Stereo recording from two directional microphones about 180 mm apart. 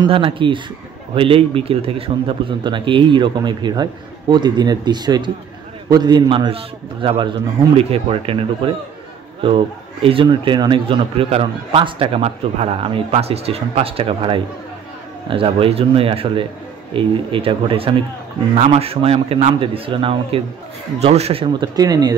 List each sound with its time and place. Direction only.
0.0 s a man's voice: 30° right (ahead or behind)
10.0 s a man's voice: 30° right (ahead or behind)